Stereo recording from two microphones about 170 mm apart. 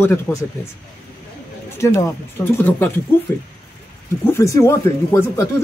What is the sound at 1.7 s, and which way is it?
Speech, 15° left (ahead or behind).